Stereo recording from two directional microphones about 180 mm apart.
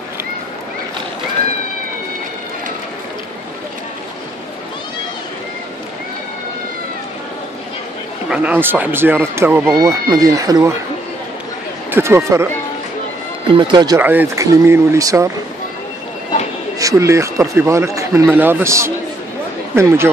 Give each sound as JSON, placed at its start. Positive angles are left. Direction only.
{"t": 8.3, "sound": "speech", "side_deg": -10}
{"t": 11.9, "sound": "speech", "side_deg": -15}
{"t": 13.5, "sound": "speech", "side_deg": -25}
{"t": 13.9, "sound": "speech", "side_deg": -10}
{"t": 16.7, "sound": "speech", "side_deg": -15}